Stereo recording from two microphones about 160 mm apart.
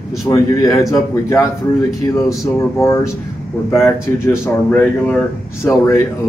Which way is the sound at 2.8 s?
20° left (ahead or behind).